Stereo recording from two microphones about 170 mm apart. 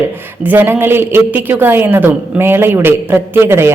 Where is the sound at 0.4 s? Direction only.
10° right (ahead or behind).